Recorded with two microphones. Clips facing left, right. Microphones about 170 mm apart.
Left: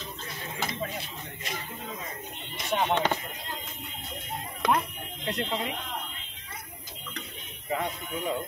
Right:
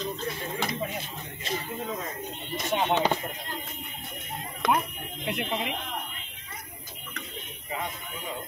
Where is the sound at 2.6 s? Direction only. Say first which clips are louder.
Right 1 dB; 5° right (ahead or behind).